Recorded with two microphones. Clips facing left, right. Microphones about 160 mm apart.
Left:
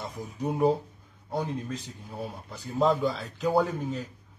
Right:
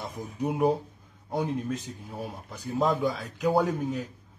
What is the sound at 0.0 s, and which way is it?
Speech, 15° right (ahead or behind).